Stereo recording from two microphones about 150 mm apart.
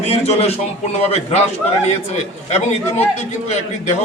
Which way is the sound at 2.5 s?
45° left (ahead or behind).